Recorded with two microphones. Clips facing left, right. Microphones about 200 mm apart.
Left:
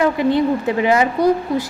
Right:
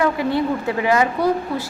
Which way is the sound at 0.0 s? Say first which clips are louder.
Left 3 dB; 20° left (ahead or behind).